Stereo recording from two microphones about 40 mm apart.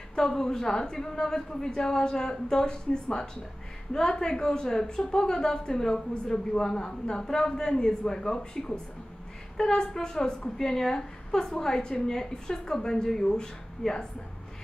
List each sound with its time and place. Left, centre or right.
0.3 s a woman's voice: centre